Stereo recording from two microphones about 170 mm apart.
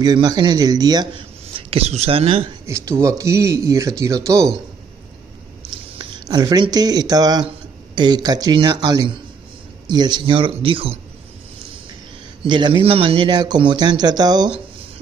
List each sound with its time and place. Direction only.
0.0 s speech: 25° right (ahead or behind)
1.5 s speech: 35° right (ahead or behind)
2.6 s speech: 15° right (ahead or behind)
5.9 s speech: 25° right (ahead or behind)
12.4 s speech: 25° right (ahead or behind)